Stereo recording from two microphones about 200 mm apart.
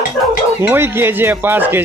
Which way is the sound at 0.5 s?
10° right (ahead or behind).